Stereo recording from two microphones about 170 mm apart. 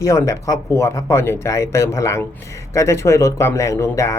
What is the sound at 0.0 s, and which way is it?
Speech, 15° left (ahead or behind).